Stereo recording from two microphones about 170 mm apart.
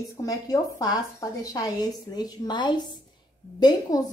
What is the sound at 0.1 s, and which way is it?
A woman's voice, 20° left (ahead or behind).